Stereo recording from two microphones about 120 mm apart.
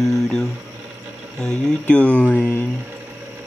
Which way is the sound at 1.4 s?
10° left (ahead or behind).